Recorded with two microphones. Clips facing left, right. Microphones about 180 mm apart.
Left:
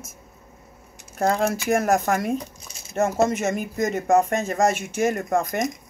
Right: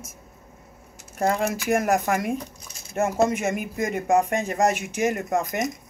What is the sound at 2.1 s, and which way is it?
Speech, 5° right (ahead or behind).